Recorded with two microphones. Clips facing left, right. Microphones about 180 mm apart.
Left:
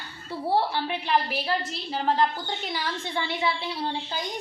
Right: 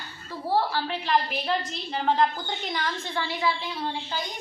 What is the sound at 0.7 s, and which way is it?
A woman's voice, 15° left (ahead or behind).